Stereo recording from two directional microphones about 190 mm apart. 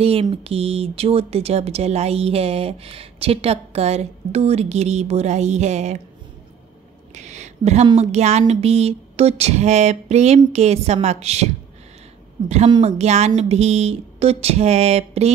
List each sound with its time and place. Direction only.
0.0 s speech: 30° right (ahead or behind)
7.2 s speech: 40° right (ahead or behind)
12.4 s speech: 35° right (ahead or behind)